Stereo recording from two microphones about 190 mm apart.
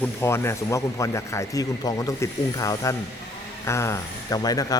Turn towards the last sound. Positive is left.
turn(degrees=20)  # may be behind; listen again after turning